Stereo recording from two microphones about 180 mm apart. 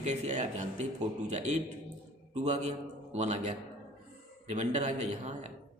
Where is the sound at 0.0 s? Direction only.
40° right (ahead or behind).